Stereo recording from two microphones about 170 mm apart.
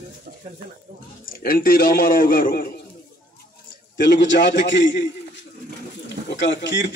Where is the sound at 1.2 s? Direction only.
55° left (ahead or behind).